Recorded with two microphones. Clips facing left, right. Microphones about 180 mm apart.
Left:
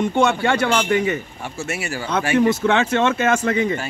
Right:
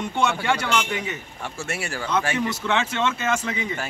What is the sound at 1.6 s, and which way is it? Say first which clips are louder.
Speech: left 4 dB; 5° left (ahead or behind).